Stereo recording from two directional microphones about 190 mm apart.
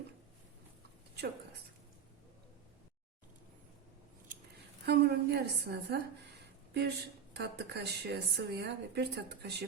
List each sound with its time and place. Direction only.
4.9 s a woman's voice: 60° right (ahead or behind)